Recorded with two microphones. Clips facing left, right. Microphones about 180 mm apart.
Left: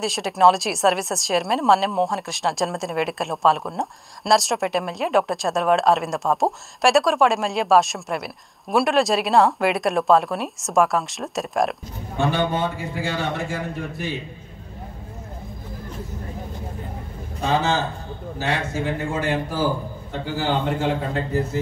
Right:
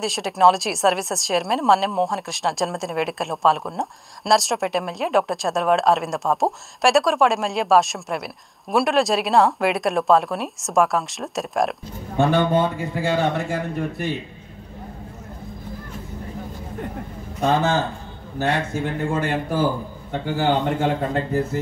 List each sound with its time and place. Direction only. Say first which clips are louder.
0.0 s a woman's voice: even; centre (ahead or behind)
12.2 s a man's voice: right 4 dB; 55° right (ahead or behind)
17.4 s a man's voice: right 2 dB; 55° right (ahead or behind)